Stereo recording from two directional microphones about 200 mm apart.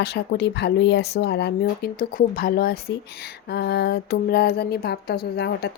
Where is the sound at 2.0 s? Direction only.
45° left (ahead or behind).